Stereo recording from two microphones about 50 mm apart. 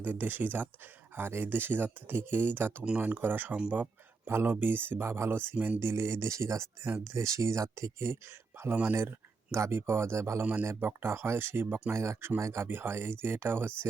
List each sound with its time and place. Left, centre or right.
0.0 s speech: right
3.0 s speech: right
5.8 s speech: right
6.8 s speech: right
7.1 s speech: right
10.4 s speech: right
10.7 s speech: right
11.9 s speech: right
12.6 s speech: right